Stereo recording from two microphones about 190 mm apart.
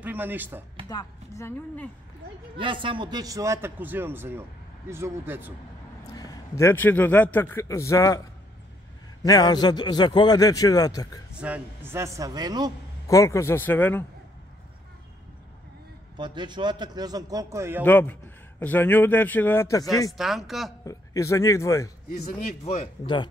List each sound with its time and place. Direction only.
0.0 s a man's voice: 10° right (ahead or behind)
0.8 s a man's voice: 20° left (ahead or behind)
2.5 s a man's voice: 25° right (ahead or behind)
6.1 s a man's voice: 20° left (ahead or behind)
9.2 s a man's voice: 20° left (ahead or behind)
11.3 s a man's voice: 10° right (ahead or behind)
13.0 s a man's voice: 15° left (ahead or behind)
16.2 s a man's voice: 25° right (ahead or behind)
17.8 s a man's voice: 10° left (ahead or behind)
20.1 s speech: centre (ahead or behind)
20.8 s a man's voice: 15° left (ahead or behind)
22.1 s speech: 35° left (ahead or behind)